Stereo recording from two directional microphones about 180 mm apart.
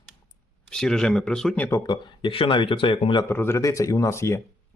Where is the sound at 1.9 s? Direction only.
25° left (ahead or behind).